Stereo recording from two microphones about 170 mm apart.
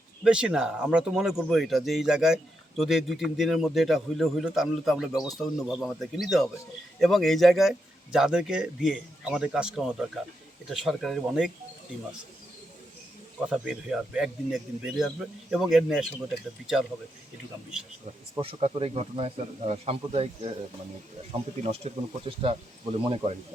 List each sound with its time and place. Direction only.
0.3 s speech: 5° right (ahead or behind)
13.5 s speech: 5° right (ahead or behind)
18.3 s speech: 35° right (ahead or behind)
21.6 s speech: 35° right (ahead or behind)